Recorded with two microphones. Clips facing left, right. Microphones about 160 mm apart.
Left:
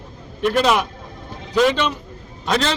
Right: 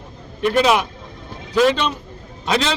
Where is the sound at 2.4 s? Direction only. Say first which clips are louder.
Even; 5° right (ahead or behind).